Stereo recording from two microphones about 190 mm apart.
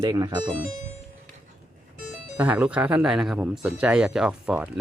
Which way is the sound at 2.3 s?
5° right (ahead or behind).